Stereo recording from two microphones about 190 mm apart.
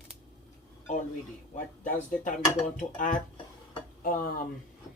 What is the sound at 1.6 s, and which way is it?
Speech, 40° left (ahead or behind).